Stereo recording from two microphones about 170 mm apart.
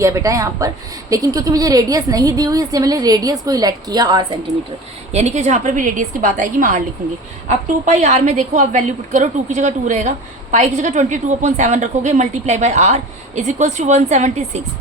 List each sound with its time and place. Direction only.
0.0 s a woman's voice: 20° right (ahead or behind)
5.1 s a woman's voice: 40° right (ahead or behind)